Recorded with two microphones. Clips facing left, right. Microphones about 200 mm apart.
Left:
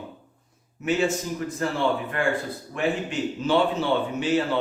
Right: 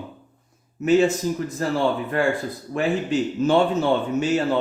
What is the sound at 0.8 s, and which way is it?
Speech, 40° right (ahead or behind).